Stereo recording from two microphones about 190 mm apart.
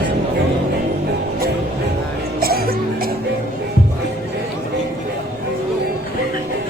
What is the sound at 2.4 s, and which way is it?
Music, 50° right (ahead or behind).